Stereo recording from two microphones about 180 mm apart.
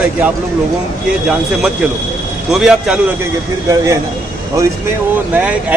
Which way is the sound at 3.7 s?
15° right (ahead or behind).